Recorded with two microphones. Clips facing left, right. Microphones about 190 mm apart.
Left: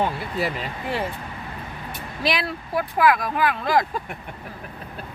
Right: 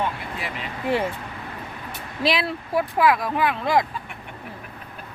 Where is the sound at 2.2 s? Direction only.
25° right (ahead or behind).